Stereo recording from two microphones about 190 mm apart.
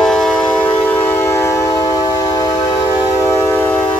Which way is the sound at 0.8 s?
10° left (ahead or behind).